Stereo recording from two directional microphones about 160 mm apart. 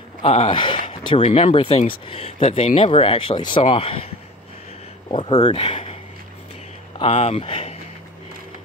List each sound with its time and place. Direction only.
0.2 s speech: 40° left (ahead or behind)
5.1 s speech: 30° left (ahead or behind)
7.0 s speech: 40° left (ahead or behind)